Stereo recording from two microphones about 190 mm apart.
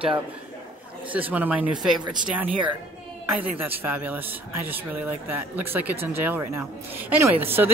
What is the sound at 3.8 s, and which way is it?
Speech, 10° right (ahead or behind).